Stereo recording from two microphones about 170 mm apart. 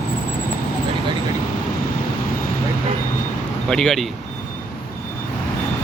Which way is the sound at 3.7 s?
5° left (ahead or behind).